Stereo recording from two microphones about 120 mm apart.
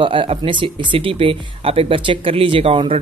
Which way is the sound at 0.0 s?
45° right (ahead or behind).